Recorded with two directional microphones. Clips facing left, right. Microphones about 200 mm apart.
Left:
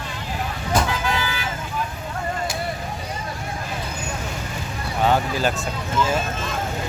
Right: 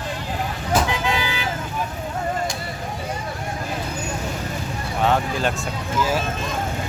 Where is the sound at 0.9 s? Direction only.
20° right (ahead or behind).